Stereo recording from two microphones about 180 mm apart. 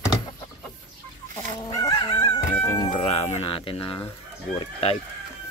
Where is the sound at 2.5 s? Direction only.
10° left (ahead or behind).